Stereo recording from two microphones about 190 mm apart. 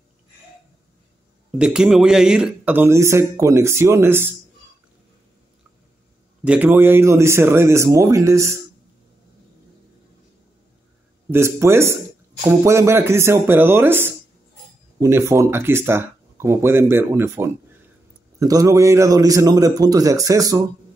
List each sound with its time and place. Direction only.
1.6 s speech: 5° right (ahead or behind)
6.4 s speech: 5° right (ahead or behind)
11.2 s speech: 15° right (ahead or behind)